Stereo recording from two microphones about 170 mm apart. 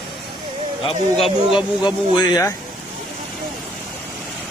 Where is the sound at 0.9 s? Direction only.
30° left (ahead or behind).